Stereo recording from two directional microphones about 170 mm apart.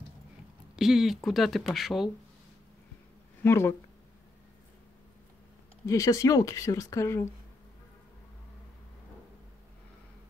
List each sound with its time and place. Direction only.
0.7 s speech: centre (ahead or behind)
3.4 s speech: 15° left (ahead or behind)
5.9 s a woman's voice: 20° left (ahead or behind)